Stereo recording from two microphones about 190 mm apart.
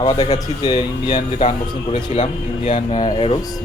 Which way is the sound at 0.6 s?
25° left (ahead or behind).